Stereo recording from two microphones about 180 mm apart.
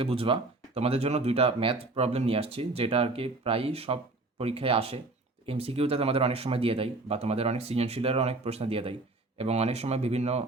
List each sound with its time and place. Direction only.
0.0 s speech: 30° right (ahead or behind)